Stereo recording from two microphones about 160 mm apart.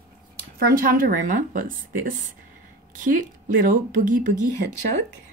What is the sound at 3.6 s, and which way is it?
Speech, 55° right (ahead or behind).